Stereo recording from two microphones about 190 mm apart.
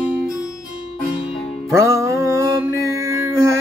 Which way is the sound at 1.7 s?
15° right (ahead or behind).